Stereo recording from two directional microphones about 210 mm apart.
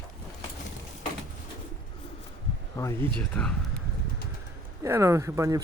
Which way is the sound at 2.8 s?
10° left (ahead or behind).